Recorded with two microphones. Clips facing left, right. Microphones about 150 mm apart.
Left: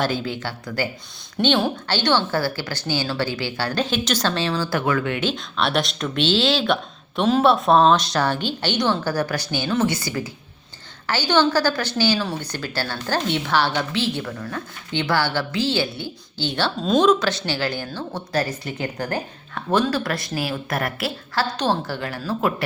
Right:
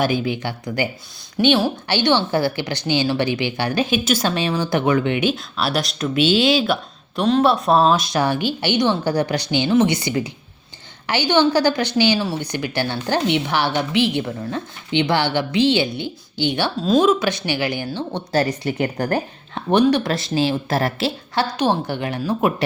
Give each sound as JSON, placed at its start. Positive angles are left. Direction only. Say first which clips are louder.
{"t": 0.0, "sound": "a woman's voice", "louder": "right 4 dB", "side_deg": -15}
{"t": 5.3, "sound": "speech", "louder": "right 1 dB", "side_deg": -5}
{"t": 7.2, "sound": "a woman's voice", "louder": "right 1 dB", "side_deg": 0}
{"t": 21.6, "sound": "speech", "louder": "right 3 dB", "side_deg": -20}